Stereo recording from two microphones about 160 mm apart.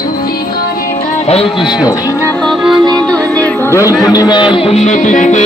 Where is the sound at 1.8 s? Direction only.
20° left (ahead or behind).